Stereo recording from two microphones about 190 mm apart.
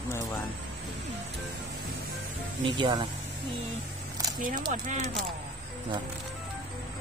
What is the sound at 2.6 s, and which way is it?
Speech, 25° right (ahead or behind).